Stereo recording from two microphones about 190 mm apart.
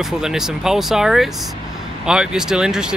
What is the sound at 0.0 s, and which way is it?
Speech, centre (ahead or behind).